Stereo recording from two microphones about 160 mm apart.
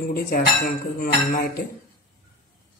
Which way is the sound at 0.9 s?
70° left (ahead or behind).